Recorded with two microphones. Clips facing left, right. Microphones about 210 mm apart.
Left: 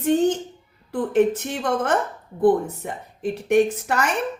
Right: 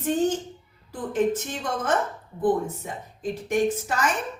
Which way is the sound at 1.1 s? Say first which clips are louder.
Left 4 dB; 65° left (ahead or behind).